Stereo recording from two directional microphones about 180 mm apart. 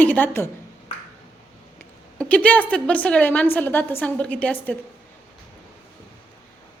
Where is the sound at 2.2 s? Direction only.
10° left (ahead or behind).